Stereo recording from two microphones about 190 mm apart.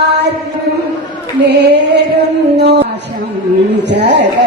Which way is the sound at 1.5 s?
60° right (ahead or behind).